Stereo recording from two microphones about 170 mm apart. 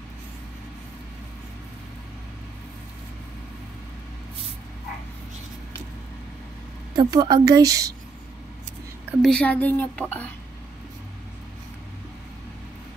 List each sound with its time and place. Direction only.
7.0 s a woman's voice: 25° right (ahead or behind)
9.2 s a woman's voice: 5° left (ahead or behind)